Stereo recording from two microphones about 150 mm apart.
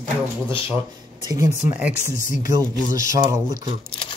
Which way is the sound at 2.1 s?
60° left (ahead or behind).